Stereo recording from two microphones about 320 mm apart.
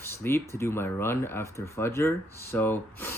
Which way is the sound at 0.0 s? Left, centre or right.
Centre.